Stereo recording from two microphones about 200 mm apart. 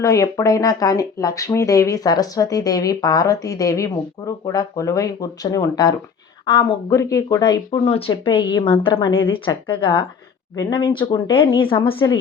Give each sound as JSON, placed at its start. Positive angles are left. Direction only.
{"t": 0.0, "sound": "speech", "side_deg": 15}